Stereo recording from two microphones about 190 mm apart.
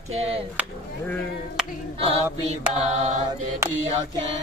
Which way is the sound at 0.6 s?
5° right (ahead or behind).